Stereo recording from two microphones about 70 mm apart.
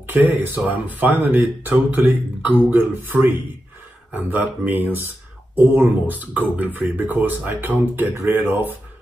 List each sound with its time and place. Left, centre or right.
0.0 s speech: right